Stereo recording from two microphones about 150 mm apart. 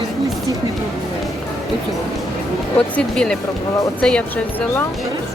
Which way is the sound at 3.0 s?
5° left (ahead or behind).